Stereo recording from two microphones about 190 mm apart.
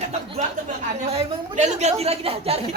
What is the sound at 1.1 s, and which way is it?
A woman's voice, 35° right (ahead or behind).